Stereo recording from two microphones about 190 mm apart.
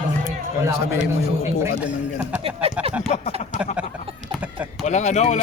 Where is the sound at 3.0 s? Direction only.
35° left (ahead or behind).